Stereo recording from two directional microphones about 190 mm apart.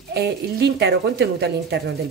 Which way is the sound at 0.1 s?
60° right (ahead or behind).